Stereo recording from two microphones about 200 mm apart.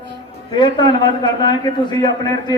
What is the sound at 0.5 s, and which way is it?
A man's voice, 25° left (ahead or behind).